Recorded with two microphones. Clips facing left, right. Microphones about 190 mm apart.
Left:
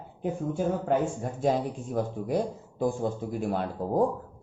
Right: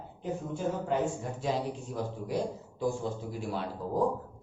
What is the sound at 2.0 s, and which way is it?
Speech, 55° left (ahead or behind).